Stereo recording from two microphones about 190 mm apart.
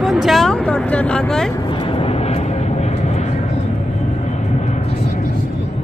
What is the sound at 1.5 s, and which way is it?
Vehicle, 25° left (ahead or behind).